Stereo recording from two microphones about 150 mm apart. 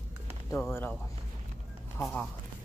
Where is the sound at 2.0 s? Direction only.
5° left (ahead or behind).